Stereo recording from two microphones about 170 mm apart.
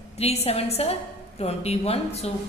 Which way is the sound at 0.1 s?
35° left (ahead or behind).